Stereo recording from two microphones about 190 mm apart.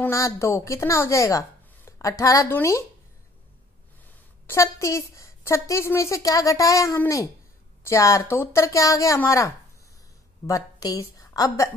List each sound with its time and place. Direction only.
0.0 s a woman's voice: 15° left (ahead or behind)
4.5 s a woman's voice: 15° left (ahead or behind)